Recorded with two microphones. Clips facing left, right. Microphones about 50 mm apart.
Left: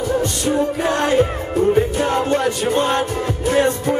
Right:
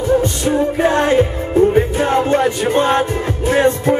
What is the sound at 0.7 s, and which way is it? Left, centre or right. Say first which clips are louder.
Music: right 5 dB; right.